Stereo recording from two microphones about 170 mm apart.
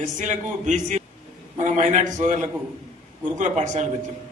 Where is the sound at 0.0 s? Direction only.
45° right (ahead or behind).